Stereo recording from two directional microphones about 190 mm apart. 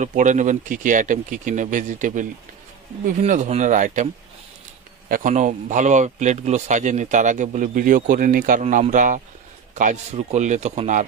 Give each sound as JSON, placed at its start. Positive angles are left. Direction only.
{"t": 0.0, "sound": "speech", "side_deg": -40}